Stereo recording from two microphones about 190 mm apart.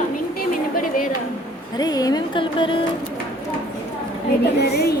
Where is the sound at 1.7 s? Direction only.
20° left (ahead or behind).